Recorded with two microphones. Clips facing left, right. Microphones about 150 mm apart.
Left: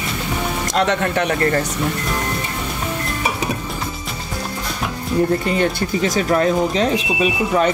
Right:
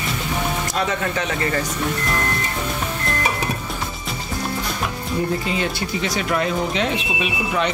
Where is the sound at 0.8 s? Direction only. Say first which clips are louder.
Left 7 dB; 65° left (ahead or behind).